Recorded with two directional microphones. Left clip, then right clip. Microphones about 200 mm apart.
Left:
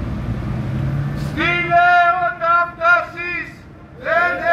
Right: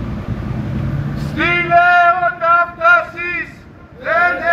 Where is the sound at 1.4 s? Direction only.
60° left (ahead or behind).